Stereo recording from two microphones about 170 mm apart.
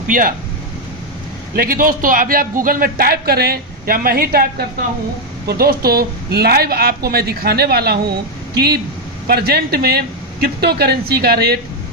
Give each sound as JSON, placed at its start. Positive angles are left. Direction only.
{"t": 0.1, "sound": "speech", "side_deg": -55}
{"t": 1.5, "sound": "a man's voice", "side_deg": -55}